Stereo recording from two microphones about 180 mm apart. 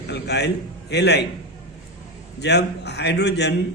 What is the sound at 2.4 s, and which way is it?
A man's voice, 70° left (ahead or behind).